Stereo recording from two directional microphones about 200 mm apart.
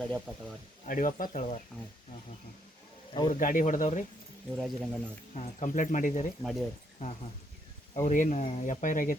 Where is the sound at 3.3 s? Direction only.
40° left (ahead or behind).